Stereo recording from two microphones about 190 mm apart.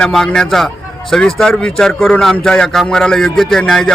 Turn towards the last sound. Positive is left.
turn(degrees=5)  # may be behind; listen again after turning